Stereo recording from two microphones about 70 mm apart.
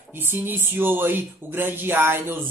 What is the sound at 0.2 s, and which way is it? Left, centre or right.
A man's voice, right.